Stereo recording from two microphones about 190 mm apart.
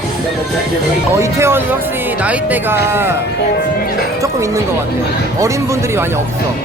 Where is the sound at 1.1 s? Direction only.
15° right (ahead or behind).